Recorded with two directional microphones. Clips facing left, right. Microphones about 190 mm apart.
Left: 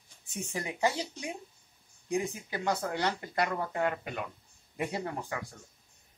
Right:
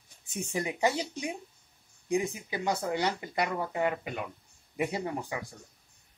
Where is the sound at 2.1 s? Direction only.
10° right (ahead or behind).